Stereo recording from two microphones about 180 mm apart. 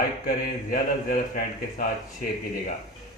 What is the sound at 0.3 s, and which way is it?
Speech, 50° left (ahead or behind).